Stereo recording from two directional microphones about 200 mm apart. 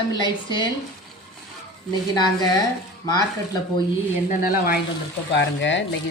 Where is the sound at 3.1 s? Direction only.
20° left (ahead or behind).